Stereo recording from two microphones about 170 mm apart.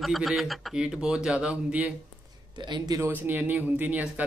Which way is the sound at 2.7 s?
20° right (ahead or behind).